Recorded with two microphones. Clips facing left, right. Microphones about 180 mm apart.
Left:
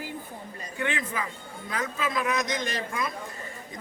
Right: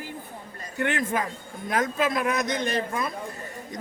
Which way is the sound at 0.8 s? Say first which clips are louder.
Right 5 dB; 60° right (ahead or behind).